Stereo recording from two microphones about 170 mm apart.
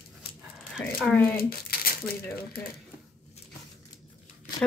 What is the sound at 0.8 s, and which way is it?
Speech, 5° left (ahead or behind).